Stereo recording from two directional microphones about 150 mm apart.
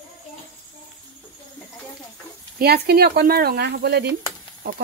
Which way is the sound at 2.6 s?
90° right.